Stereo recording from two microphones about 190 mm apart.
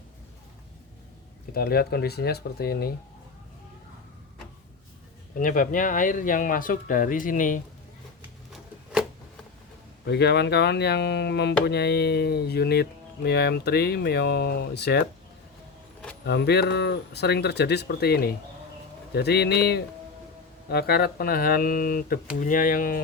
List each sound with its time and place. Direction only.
1.5 s speech: 55° left (ahead or behind)
5.4 s speech: 45° left (ahead or behind)
10.1 s speech: 65° left (ahead or behind)
16.2 s speech: 60° left (ahead or behind)